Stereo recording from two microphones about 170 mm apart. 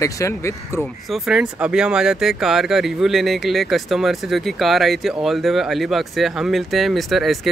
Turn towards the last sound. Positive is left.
turn(degrees=0)  # may be behind; listen again after turning